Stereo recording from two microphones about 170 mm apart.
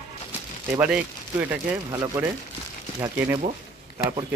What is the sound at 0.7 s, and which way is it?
Speech, 5° right (ahead or behind).